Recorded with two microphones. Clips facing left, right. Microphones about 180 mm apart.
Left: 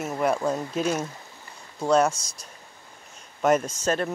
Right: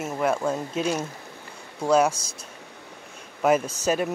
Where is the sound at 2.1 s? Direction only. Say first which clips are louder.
Right 1 dB; 30° right (ahead or behind).